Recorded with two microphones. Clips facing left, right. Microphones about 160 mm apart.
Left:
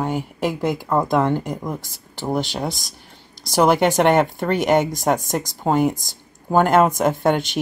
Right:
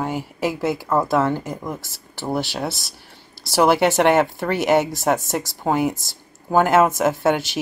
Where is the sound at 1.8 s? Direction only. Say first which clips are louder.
Left 1 dB; 15° left (ahead or behind).